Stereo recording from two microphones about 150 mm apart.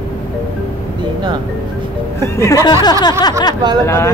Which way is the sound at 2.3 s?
20° left (ahead or behind).